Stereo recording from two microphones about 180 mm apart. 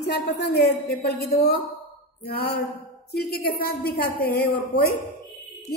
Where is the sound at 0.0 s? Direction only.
65° left (ahead or behind).